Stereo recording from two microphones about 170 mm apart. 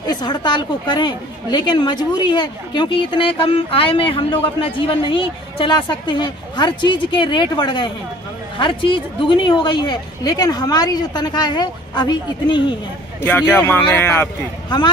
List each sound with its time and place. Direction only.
0.1 s a woman's voice: 25° left (ahead or behind)
13.2 s speech: 10° left (ahead or behind)